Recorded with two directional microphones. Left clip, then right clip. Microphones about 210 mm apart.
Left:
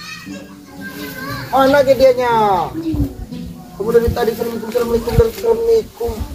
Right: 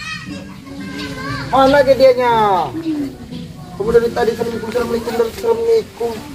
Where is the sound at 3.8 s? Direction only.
5° left (ahead or behind).